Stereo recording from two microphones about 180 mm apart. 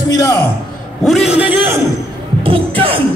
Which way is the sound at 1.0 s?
Centre (ahead or behind).